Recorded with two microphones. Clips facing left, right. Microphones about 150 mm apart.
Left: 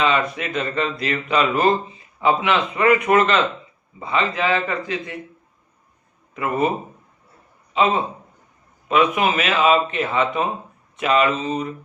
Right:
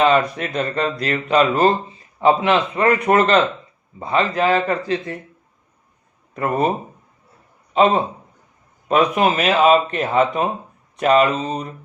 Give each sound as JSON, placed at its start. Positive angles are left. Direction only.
{"t": 0.0, "sound": "speech", "side_deg": -40}
{"t": 6.3, "sound": "a man's voice", "side_deg": -40}